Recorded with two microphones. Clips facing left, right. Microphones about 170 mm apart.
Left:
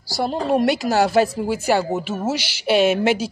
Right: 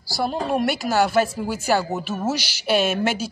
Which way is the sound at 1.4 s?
25° left (ahead or behind).